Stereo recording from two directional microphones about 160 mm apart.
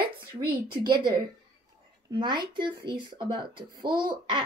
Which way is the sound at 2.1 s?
30° right (ahead or behind).